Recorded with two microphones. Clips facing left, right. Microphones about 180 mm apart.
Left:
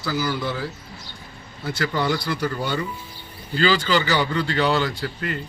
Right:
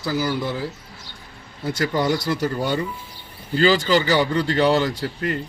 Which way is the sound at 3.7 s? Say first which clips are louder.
Right 3 dB; 45° right (ahead or behind).